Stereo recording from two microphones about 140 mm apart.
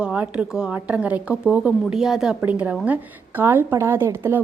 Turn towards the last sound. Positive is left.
turn(degrees=-15)  # may be behind; listen again after turning